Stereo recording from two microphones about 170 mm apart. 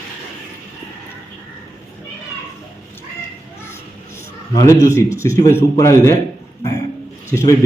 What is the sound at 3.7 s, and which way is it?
A man's voice, 15° left (ahead or behind).